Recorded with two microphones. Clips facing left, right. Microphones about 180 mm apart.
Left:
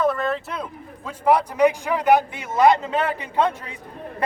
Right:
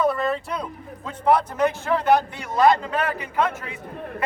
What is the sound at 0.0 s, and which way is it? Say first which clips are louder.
A man's voice: even; centre (ahead or behind).